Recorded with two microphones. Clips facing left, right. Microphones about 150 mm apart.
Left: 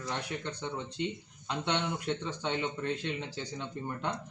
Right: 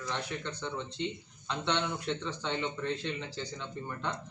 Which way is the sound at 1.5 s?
15° left (ahead or behind).